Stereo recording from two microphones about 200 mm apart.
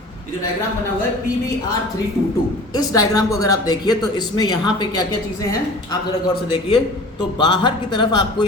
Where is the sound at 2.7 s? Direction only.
20° left (ahead or behind).